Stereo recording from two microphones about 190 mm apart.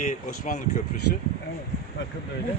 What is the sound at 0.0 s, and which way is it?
Speech, 40° left (ahead or behind).